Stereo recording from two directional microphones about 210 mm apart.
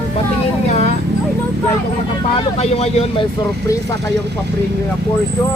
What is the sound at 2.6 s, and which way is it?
Speech, 30° left (ahead or behind).